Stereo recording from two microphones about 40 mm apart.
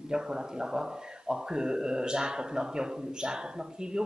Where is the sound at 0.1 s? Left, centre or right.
Centre.